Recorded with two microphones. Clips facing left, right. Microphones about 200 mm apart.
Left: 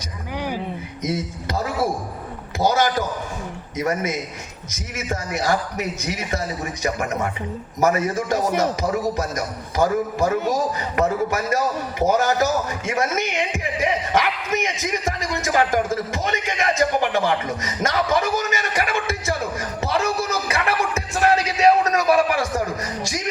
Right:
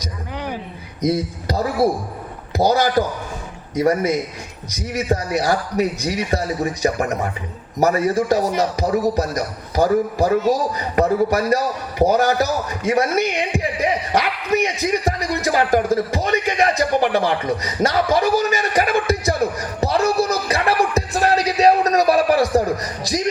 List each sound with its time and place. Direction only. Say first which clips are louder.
1.0 s a man's voice: right 6 dB; 35° right (ahead or behind)